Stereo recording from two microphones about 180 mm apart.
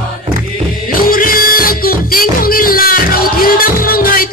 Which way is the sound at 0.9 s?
50° left (ahead or behind).